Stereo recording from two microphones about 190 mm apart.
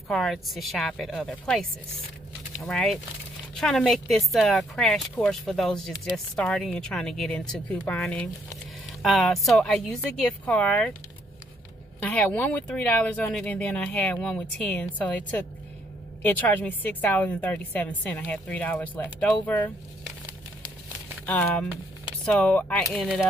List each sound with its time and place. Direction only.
0.1 s speech: centre (ahead or behind)
2.6 s speech: centre (ahead or behind)
12.0 s a woman's voice: 5° left (ahead or behind)
16.3 s a woman's voice: 10° left (ahead or behind)
21.3 s a woman's voice: 10° left (ahead or behind)